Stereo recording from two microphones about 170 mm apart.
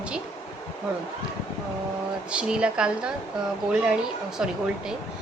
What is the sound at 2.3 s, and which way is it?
Speech, 5° right (ahead or behind).